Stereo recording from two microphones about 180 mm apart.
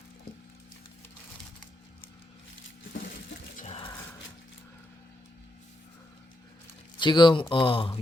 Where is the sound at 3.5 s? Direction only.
35° left (ahead or behind).